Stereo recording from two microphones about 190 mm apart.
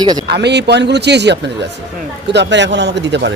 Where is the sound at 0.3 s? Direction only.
60° right (ahead or behind).